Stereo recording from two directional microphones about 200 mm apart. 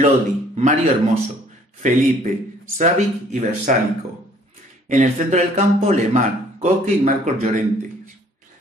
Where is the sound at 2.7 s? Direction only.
40° right (ahead or behind).